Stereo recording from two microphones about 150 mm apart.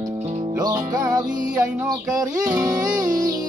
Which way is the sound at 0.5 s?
25° right (ahead or behind).